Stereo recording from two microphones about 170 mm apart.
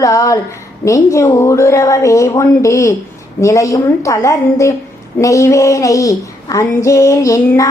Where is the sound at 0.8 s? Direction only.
15° left (ahead or behind).